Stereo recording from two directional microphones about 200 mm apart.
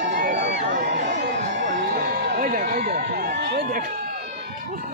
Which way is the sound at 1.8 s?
55° right (ahead or behind).